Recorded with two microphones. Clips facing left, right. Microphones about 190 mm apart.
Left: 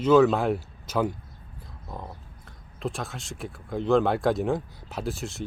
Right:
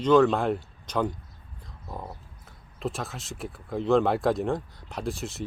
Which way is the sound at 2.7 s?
Centre (ahead or behind).